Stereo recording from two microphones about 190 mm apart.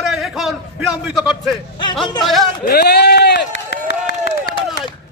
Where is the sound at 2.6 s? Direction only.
55° left (ahead or behind).